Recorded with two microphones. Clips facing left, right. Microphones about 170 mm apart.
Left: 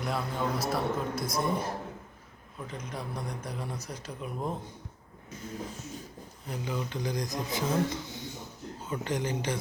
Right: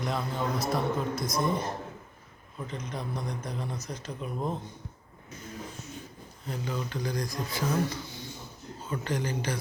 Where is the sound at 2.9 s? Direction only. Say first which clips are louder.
Right 1 dB; 10° left (ahead or behind).